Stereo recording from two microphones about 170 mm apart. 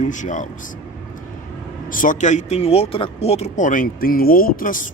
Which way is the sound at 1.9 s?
50° left (ahead or behind).